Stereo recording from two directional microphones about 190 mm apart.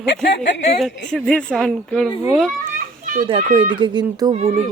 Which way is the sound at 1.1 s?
5° left (ahead or behind).